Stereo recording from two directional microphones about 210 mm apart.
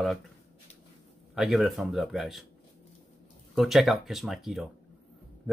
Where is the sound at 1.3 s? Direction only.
Centre (ahead or behind).